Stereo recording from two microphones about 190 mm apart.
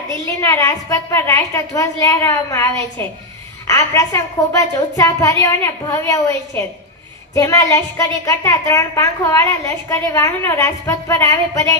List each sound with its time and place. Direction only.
0.3 s a woman's voice: 15° left (ahead or behind)
7.3 s a woman's voice: 15° left (ahead or behind)